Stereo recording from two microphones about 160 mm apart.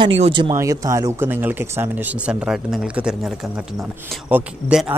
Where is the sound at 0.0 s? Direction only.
30° right (ahead or behind).